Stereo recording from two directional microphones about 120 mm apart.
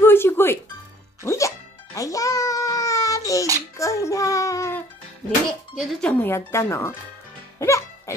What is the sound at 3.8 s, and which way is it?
Child singing, 25° left (ahead or behind).